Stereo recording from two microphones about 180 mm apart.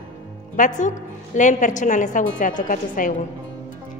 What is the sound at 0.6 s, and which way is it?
A woman's voice, 45° left (ahead or behind).